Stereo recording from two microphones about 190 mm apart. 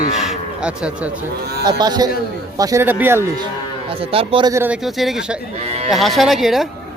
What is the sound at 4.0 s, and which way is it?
Speech, 30° right (ahead or behind).